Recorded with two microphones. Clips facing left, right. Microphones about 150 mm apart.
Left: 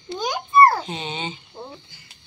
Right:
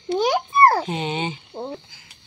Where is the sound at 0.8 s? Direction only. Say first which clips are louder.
Right 5 dB; 65° right (ahead or behind).